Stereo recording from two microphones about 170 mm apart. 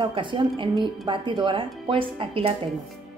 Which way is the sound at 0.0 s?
30° right (ahead or behind).